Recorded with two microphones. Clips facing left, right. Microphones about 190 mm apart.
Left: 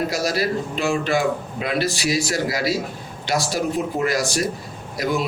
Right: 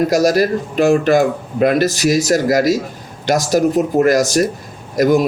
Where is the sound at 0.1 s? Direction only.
45° right (ahead or behind).